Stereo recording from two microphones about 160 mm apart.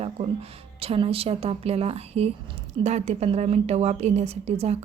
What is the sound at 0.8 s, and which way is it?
A woman's voice, 35° right (ahead or behind).